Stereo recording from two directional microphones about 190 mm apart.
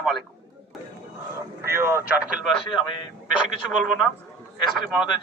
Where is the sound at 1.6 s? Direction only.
15° right (ahead or behind).